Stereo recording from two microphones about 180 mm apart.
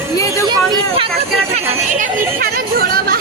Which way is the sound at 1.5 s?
45° right (ahead or behind).